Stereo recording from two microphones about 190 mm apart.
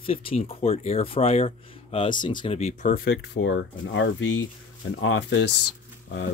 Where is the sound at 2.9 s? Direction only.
55° left (ahead or behind).